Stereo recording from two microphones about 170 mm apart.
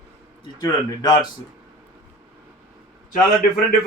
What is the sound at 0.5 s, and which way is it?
Speech, 25° left (ahead or behind).